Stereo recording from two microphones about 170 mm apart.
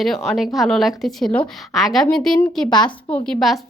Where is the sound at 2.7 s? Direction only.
25° left (ahead or behind).